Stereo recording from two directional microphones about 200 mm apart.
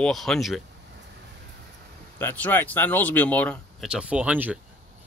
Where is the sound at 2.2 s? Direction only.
10° left (ahead or behind); by 4.6 s 10° right (ahead or behind).